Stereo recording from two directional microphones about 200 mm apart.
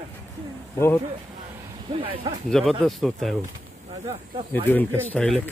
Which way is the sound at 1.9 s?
25° right (ahead or behind).